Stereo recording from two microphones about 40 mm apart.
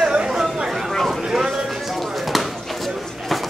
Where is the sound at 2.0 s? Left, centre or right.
Centre.